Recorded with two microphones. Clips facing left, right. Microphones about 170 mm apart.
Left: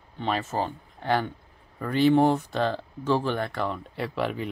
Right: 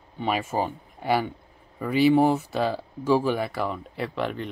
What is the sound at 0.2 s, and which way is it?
Speech, 10° right (ahead or behind).